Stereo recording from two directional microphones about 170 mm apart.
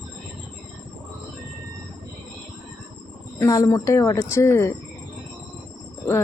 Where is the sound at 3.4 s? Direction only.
20° left (ahead or behind).